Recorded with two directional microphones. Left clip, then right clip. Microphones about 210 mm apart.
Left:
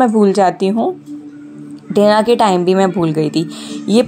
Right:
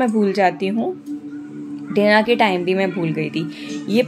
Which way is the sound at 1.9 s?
20° left (ahead or behind).